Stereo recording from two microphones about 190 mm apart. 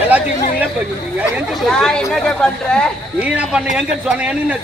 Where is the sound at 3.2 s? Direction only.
5° right (ahead or behind).